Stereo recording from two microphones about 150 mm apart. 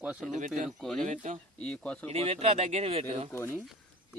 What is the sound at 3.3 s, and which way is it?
Speech, 15° left (ahead or behind).